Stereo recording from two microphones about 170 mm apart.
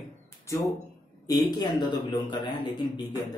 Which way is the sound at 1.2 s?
25° left (ahead or behind).